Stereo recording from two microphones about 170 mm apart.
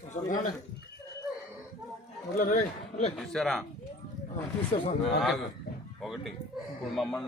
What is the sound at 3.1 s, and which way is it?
Speech, centre (ahead or behind).